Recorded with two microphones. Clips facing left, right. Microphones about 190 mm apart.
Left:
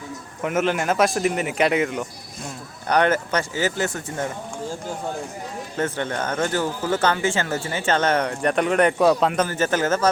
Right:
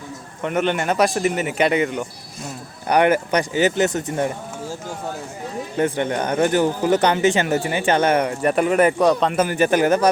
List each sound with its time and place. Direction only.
0.4 s a man's voice: centre (ahead or behind)
2.8 s speech: 10° right (ahead or behind)
5.7 s speech: 15° right (ahead or behind); by 9.4 s centre (ahead or behind)
9.4 s speech: 15° right (ahead or behind)